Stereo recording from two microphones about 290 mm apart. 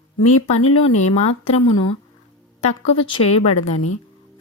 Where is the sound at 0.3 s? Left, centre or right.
Left.